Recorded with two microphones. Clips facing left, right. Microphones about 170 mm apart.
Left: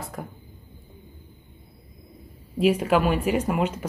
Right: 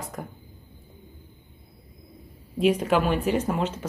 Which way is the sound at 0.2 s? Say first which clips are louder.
Left 1 dB; centre (ahead or behind).